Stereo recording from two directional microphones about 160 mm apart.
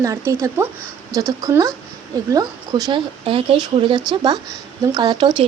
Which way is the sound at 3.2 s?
35° right (ahead or behind).